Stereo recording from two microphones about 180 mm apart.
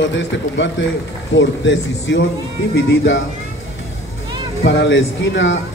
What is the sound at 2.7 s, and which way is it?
Speech, 65° left (ahead or behind).